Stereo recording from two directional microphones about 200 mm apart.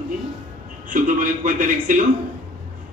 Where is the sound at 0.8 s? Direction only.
40° right (ahead or behind).